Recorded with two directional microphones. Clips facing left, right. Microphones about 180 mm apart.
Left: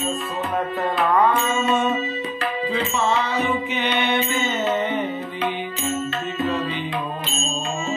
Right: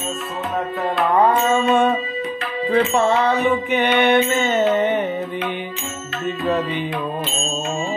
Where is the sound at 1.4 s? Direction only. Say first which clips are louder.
Right 5 dB; 60° right (ahead or behind).